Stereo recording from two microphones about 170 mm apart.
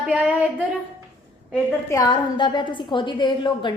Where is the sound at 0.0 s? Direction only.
5° right (ahead or behind).